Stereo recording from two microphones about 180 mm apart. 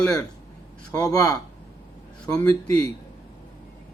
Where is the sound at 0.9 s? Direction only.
20° left (ahead or behind).